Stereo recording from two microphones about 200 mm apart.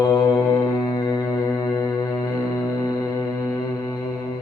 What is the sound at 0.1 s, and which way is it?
Music, 20° left (ahead or behind).